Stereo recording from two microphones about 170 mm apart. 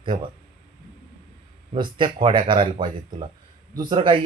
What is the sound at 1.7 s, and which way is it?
Speech, 30° right (ahead or behind).